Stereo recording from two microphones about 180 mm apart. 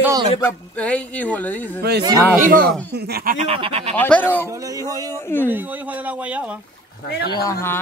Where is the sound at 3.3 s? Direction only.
35° right (ahead or behind).